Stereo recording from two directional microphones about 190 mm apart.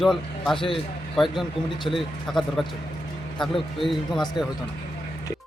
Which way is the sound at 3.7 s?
Centre (ahead or behind).